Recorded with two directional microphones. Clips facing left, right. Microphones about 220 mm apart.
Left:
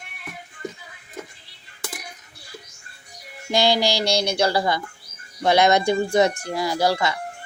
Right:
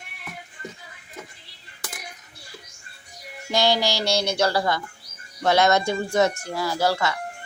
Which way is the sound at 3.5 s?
15° left (ahead or behind).